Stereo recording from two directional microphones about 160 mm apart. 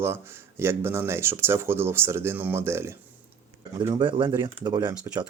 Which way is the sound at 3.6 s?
25° right (ahead or behind).